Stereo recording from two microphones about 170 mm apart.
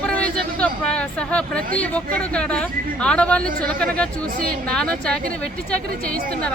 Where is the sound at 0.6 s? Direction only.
5° left (ahead or behind).